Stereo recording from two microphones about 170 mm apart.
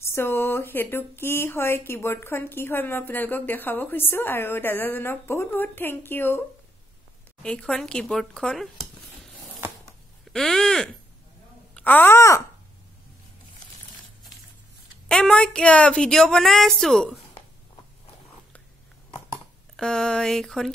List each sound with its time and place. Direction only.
0.0 s speech: 15° left (ahead or behind)
7.4 s a woman's voice: 5° left (ahead or behind)
15.0 s a woman's voice: 5° left (ahead or behind)
19.0 s a sound: 20° left (ahead or behind)
19.8 s a woman's voice: 5° left (ahead or behind)